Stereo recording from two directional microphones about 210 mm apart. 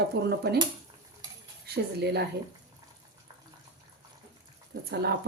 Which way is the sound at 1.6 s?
50° right (ahead or behind).